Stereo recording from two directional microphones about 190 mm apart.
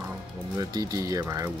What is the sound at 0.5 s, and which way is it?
Speech, 20° right (ahead or behind).